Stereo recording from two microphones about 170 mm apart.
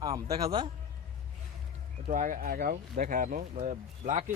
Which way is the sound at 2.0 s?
50° right (ahead or behind).